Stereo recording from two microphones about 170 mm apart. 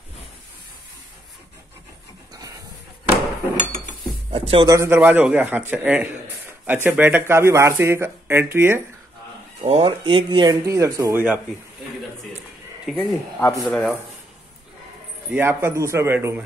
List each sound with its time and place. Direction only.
4.3 s speech: 30° right (ahead or behind)
4.7 s speech: 15° right (ahead or behind)
9.6 s speech: 40° right (ahead or behind); by 11.4 s 10° right (ahead or behind)
12.9 s speech: 15° left (ahead or behind)
15.3 s speech: 15° right (ahead or behind)